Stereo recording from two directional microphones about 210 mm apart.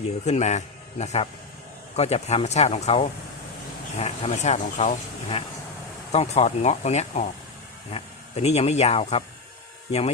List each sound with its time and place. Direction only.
0.3 s a man's voice: 35° left (ahead or behind)